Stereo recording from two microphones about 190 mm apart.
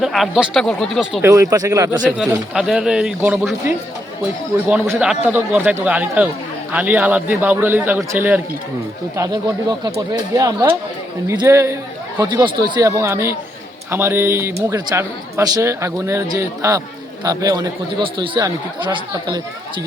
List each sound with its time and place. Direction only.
0.0 s speech: centre (ahead or behind)
1.2 s a man's voice: 15° right (ahead or behind)
2.0 s speech: centre (ahead or behind)
4.7 s a man's voice: 5° right (ahead or behind)